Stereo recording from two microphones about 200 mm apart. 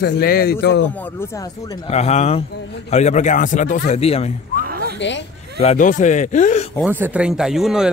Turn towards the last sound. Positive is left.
turn(degrees=-5)  # may be behind; listen again after turning